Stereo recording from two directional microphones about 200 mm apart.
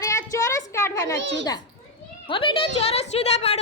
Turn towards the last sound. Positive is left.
turn(degrees=30)  # may be behind; listen again after turning